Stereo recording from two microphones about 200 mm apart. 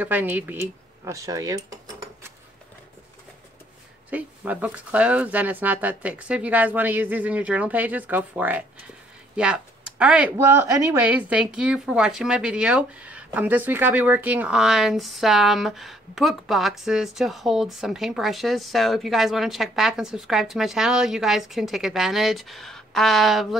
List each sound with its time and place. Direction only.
0.0 s speech: 10° right (ahead or behind)
4.1 s speech: 5° right (ahead or behind)